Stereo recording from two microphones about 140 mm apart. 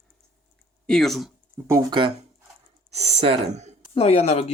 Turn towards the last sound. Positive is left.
turn(degrees=50)  # may be behind; listen again after turning